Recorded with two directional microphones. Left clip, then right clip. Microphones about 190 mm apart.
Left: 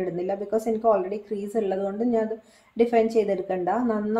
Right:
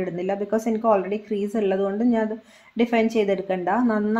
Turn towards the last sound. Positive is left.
turn(degrees=-15)  # may be behind; listen again after turning